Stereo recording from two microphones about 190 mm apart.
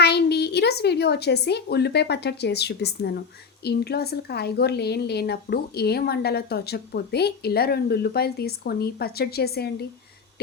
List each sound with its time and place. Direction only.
0.0 s a woman's voice: 60° left (ahead or behind)